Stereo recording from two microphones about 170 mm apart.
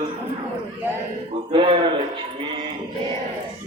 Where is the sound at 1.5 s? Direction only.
30° right (ahead or behind).